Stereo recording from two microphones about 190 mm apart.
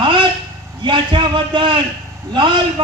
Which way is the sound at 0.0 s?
25° right (ahead or behind).